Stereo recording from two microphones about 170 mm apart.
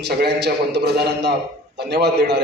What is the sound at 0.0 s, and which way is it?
A man's voice, 75° right (ahead or behind).